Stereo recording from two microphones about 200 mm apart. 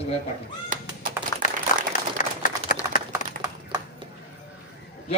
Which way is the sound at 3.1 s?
20° right (ahead or behind).